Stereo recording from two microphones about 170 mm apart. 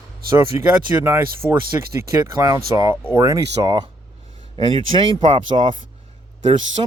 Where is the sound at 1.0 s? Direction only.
15° right (ahead or behind).